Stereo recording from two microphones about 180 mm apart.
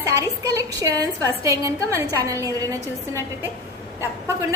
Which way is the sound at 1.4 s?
15° right (ahead or behind).